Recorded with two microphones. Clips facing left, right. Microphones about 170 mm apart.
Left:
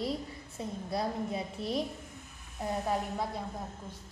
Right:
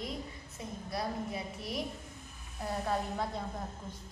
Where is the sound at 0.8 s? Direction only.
25° left (ahead or behind).